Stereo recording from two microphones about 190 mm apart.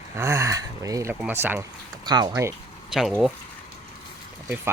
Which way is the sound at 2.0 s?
20° right (ahead or behind).